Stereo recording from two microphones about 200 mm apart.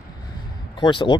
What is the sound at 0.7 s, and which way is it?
Speech, 25° left (ahead or behind).